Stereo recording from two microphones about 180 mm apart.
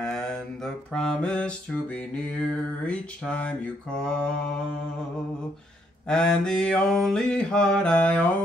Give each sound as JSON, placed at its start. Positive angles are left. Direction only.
{"t": 0.9, "sound": "mantra", "side_deg": 5}
{"t": 6.0, "sound": "mantra", "side_deg": 5}